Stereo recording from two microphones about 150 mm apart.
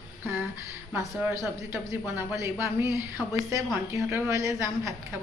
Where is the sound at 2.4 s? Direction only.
20° right (ahead or behind).